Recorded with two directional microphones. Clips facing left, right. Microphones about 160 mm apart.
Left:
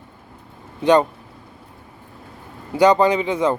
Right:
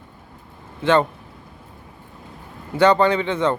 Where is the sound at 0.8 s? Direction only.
15° left (ahead or behind).